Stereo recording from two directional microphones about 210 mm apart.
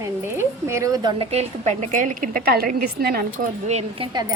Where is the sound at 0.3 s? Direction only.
15° right (ahead or behind).